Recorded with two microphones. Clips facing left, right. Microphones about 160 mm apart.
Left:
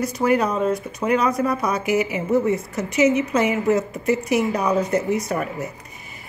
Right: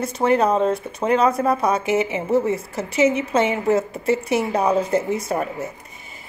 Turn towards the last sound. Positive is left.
turn(degrees=-25)  # may be behind; listen again after turning